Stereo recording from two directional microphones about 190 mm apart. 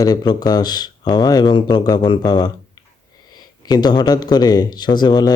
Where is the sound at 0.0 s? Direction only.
20° left (ahead or behind).